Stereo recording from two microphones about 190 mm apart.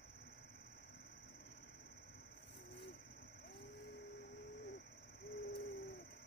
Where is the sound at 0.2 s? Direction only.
55° left (ahead or behind).